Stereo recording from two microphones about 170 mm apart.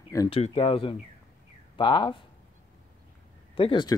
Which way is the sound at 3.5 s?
30° left (ahead or behind).